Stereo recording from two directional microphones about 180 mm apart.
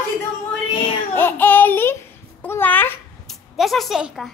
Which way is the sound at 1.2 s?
10° left (ahead or behind).